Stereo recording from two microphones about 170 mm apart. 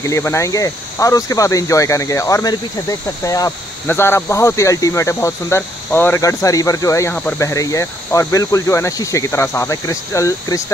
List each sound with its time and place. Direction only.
0.0 s speech: 15° left (ahead or behind)